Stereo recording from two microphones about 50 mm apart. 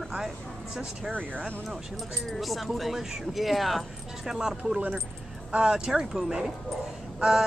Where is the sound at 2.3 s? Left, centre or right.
Centre.